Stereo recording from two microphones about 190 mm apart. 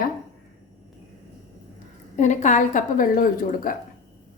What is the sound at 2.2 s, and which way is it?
A woman's voice, 40° left (ahead or behind).